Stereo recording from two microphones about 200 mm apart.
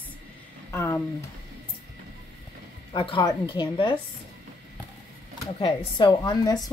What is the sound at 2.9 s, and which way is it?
Speech, 25° left (ahead or behind).